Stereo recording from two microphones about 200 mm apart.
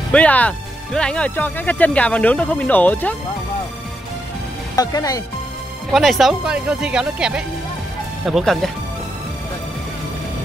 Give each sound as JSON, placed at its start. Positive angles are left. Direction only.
{"t": 0.1, "sound": "speech", "side_deg": 5}
{"t": 4.7, "sound": "speech", "side_deg": 20}
{"t": 5.9, "sound": "speech", "side_deg": 0}